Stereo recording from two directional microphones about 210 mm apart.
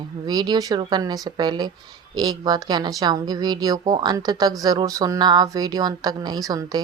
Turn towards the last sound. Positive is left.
turn(degrees=-20)  # may be behind; listen again after turning